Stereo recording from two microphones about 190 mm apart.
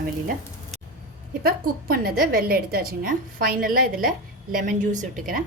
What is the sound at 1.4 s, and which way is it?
A woman's voice, 50° right (ahead or behind).